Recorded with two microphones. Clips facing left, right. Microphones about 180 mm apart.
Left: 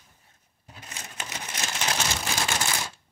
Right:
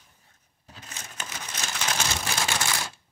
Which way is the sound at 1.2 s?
20° left (ahead or behind).